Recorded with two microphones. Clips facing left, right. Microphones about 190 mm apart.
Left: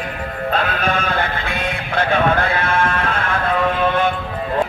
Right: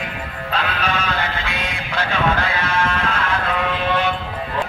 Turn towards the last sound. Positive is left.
turn(degrees=50)  # may be behind; listen again after turning